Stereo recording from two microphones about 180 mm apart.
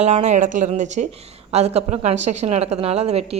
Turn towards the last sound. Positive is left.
turn(degrees=-35)  # may be behind; listen again after turning